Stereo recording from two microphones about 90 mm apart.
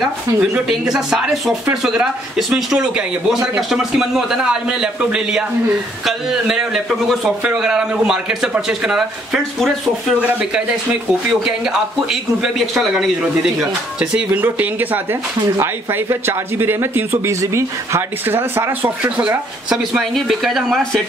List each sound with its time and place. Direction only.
0.0 s speech: 5° right (ahead or behind)
11.2 s speech: 5° right (ahead or behind); by 18.7 s 30° right (ahead or behind)
18.8 s speech: 15° right (ahead or behind)
20.0 s speech: centre (ahead or behind)